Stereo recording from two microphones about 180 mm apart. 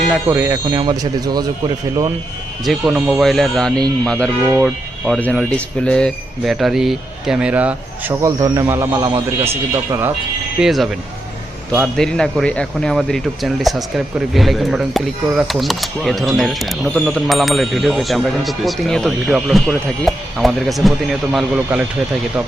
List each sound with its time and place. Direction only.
0.3 s speech: 15° right (ahead or behind)
2.6 s a man's voice: 5° right (ahead or behind)
10.6 s speech: centre (ahead or behind)
11.9 s speech: 5° left (ahead or behind)